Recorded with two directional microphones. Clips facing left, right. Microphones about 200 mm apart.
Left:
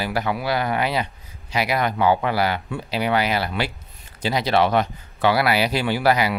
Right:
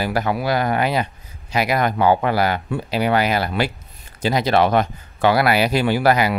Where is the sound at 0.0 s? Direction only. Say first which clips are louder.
Right 3 dB; 45° right (ahead or behind).